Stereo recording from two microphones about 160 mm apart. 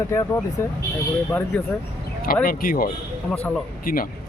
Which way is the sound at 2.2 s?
65° left (ahead or behind).